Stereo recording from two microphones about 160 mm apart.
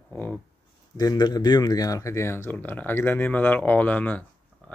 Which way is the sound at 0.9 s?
25° left (ahead or behind).